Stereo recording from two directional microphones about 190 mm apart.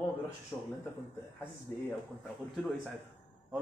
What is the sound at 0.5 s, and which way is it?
Speech, 15° left (ahead or behind).